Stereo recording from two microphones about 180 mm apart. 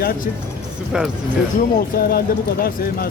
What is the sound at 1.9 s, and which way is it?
Speech, 55° left (ahead or behind).